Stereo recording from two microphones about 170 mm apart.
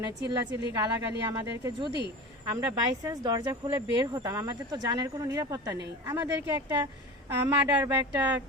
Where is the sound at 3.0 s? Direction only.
25° right (ahead or behind).